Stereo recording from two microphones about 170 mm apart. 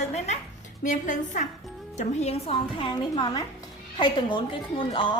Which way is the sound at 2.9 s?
25° left (ahead or behind).